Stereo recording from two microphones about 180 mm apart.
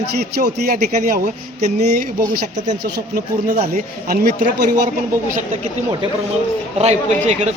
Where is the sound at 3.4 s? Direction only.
45° right (ahead or behind).